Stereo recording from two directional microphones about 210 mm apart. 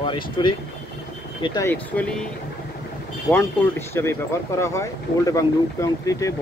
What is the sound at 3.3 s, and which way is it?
Speech, 10° left (ahead or behind).